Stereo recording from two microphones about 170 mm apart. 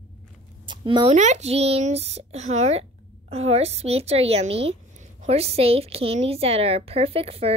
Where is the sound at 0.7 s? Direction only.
30° right (ahead or behind).